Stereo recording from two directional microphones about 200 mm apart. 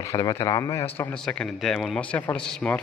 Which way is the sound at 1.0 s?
5° left (ahead or behind).